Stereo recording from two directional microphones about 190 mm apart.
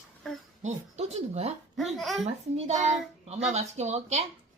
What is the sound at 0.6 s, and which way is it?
Speech, 35° right (ahead or behind).